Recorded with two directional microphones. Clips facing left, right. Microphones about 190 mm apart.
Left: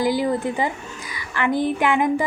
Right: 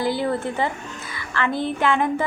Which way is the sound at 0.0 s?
15° left (ahead or behind).